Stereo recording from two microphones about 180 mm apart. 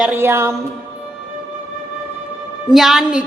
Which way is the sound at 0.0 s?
10° right (ahead or behind).